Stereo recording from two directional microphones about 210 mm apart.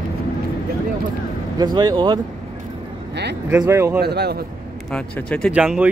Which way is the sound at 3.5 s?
10° right (ahead or behind).